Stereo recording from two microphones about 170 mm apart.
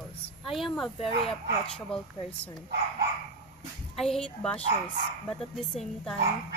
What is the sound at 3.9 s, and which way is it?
A woman's voice, 5° left (ahead or behind).